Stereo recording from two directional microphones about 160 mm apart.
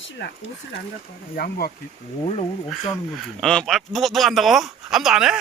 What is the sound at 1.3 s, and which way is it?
Speech, 70° left (ahead or behind).